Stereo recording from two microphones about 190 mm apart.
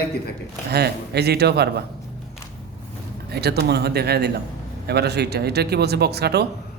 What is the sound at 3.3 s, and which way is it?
A man's voice, 60° right (ahead or behind).